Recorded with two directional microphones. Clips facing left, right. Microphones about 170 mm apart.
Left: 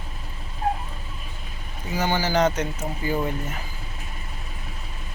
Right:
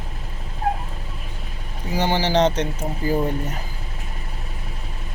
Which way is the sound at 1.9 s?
30° right (ahead or behind).